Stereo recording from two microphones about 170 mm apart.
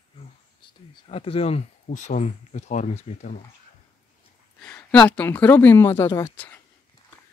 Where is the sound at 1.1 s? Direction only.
35° left (ahead or behind).